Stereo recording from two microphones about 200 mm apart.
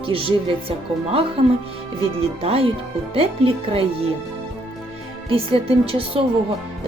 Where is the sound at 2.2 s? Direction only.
30° right (ahead or behind).